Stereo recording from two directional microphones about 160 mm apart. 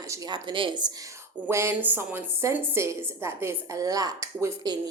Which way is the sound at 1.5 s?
15° right (ahead or behind).